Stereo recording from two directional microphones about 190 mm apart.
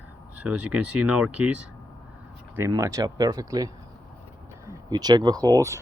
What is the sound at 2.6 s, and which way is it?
Speech, 15° right (ahead or behind).